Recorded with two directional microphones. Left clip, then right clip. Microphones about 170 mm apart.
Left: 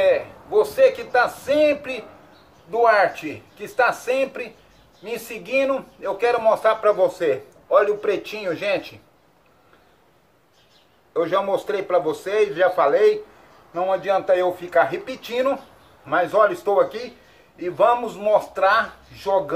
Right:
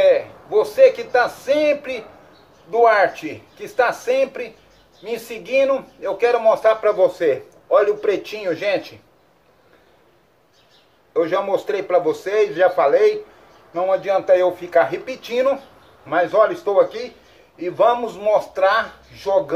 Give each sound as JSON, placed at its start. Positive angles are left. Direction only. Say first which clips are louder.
{"t": 0.0, "sound": "a man's voice", "louder": "right 4 dB", "side_deg": -15}
{"t": 11.1, "sound": "a man's voice", "louder": "right 2 dB", "side_deg": -15}